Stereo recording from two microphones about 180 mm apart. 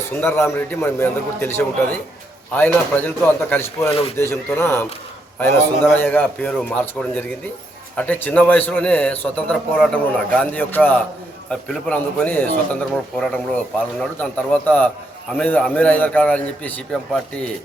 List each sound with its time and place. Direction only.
0.2 s a man's voice: 15° left (ahead or behind)
3.8 s speech: 35° left (ahead or behind)
4.2 s a man's voice: 15° left (ahead or behind)